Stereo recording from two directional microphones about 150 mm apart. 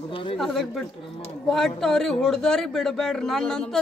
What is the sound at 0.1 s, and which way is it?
Speech, 35° left (ahead or behind).